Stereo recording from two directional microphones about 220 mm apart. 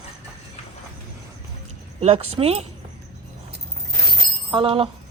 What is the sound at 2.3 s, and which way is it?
Speech, 25° right (ahead or behind).